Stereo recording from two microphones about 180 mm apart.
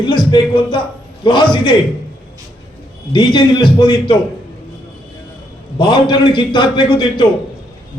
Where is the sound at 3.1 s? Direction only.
25° left (ahead or behind).